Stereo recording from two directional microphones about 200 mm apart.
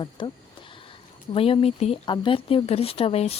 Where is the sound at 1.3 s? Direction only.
30° left (ahead or behind).